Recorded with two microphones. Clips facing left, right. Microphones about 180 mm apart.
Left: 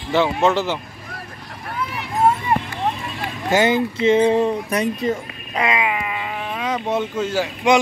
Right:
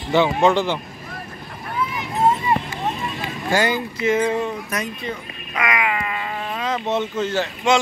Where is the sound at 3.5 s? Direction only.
20° left (ahead or behind).